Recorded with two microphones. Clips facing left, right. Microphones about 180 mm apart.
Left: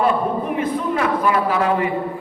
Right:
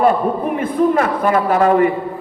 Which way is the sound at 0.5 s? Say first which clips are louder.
Right 6 dB; 50° right (ahead or behind).